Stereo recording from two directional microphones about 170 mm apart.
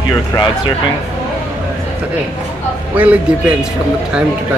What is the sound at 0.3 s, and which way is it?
Speech, 20° left (ahead or behind).